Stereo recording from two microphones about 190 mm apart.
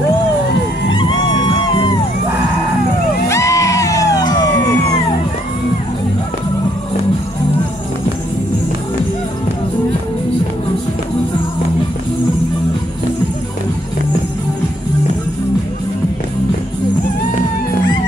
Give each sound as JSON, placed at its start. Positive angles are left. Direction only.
{"t": 3.3, "sound": "music", "side_deg": 15}